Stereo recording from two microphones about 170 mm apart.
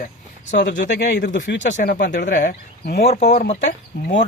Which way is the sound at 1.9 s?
60° left (ahead or behind).